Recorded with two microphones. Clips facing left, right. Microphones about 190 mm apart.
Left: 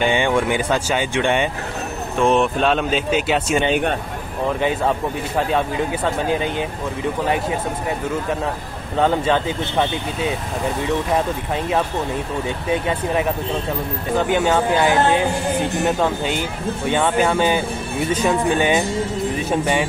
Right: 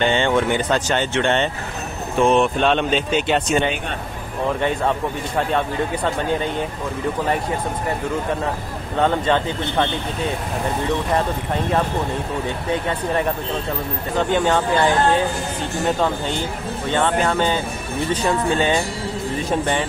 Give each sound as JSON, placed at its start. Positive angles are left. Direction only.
{"t": 0.0, "sound": "speech", "side_deg": 10}
{"t": 2.1, "sound": "speech", "side_deg": 0}
{"t": 4.6, "sound": "speech", "side_deg": 5}
{"t": 9.0, "sound": "speech", "side_deg": 10}
{"t": 14.3, "sound": "speech", "side_deg": 5}
{"t": 16.9, "sound": "speech", "side_deg": 10}